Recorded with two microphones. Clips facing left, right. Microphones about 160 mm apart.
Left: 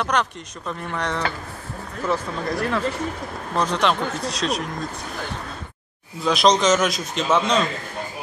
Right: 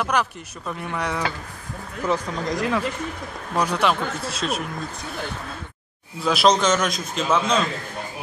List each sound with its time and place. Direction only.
0.0 s a man's voice: 5° right (ahead or behind)
6.2 s a man's voice: 5° right (ahead or behind)